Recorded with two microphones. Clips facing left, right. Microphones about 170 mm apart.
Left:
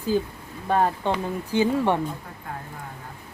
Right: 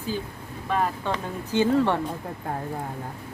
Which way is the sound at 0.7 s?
35° left (ahead or behind).